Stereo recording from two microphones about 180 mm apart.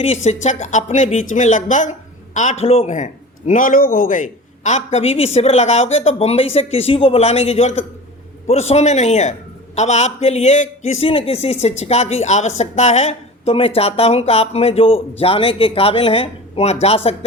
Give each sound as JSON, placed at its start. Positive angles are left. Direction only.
{"t": 0.3, "sound": "a woman's voice", "side_deg": 40}